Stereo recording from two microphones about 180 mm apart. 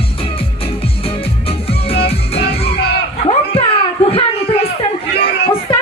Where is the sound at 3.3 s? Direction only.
35° left (ahead or behind).